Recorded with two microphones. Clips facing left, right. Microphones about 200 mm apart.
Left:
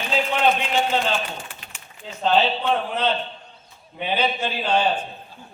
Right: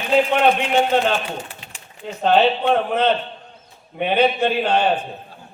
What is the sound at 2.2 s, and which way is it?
Speech, 55° right (ahead or behind).